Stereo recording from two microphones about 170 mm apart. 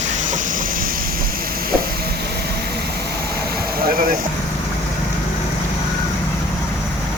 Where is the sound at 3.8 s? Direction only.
55° right (ahead or behind).